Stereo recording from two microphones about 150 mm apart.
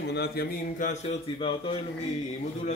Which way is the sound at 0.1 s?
90° left.